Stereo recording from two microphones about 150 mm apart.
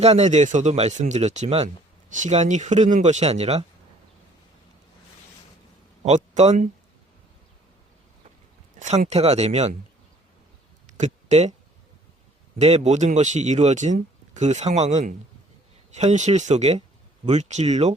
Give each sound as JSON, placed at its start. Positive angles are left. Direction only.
{"t": 0.0, "sound": "speech", "side_deg": -45}
{"t": 6.0, "sound": "speech", "side_deg": -50}
{"t": 8.8, "sound": "speech", "side_deg": -50}
{"t": 10.8, "sound": "a sound", "side_deg": -50}
{"t": 12.5, "sound": "speech", "side_deg": -45}